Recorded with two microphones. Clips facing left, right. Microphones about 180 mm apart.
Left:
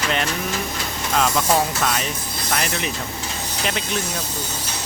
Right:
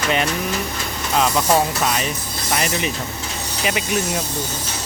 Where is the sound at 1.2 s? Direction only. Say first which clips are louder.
Right 2 dB; 5° right (ahead or behind).